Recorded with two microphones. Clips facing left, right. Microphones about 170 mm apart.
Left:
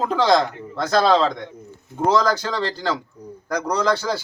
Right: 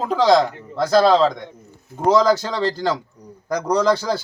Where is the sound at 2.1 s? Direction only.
20° right (ahead or behind).